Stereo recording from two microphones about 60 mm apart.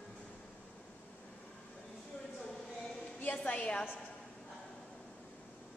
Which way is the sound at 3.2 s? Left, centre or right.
Left.